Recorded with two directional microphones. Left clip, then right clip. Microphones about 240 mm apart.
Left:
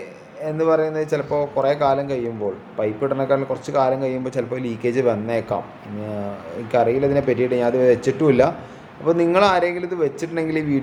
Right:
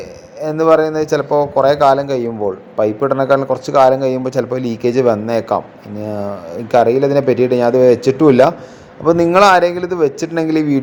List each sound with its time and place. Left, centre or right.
0.3 s a man's voice: right